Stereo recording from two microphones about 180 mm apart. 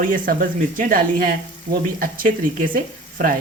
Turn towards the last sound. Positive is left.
turn(degrees=-50)  # may be behind; listen again after turning